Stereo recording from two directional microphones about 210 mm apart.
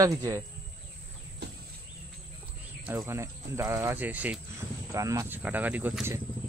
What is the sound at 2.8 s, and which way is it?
Speech, 10° right (ahead or behind).